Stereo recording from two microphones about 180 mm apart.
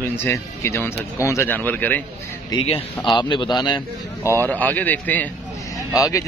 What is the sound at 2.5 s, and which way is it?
A man's voice, 30° left (ahead or behind).